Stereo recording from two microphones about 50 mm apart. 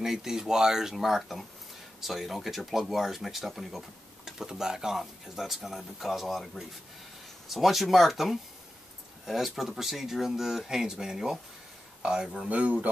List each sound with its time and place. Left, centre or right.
0.0 s speech: centre
12.4 s speech: right